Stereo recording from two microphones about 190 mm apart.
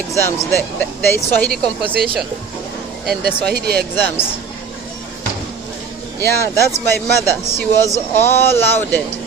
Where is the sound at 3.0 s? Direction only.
Centre (ahead or behind).